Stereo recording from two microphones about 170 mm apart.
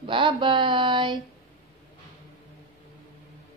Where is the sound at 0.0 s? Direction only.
30° right (ahead or behind).